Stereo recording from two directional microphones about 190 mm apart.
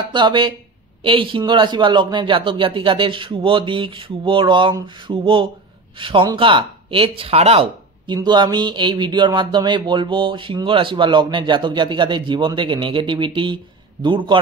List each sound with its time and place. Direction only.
0.1 s speech: 25° right (ahead or behind)